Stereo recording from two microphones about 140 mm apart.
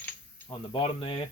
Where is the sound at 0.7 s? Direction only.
40° left (ahead or behind).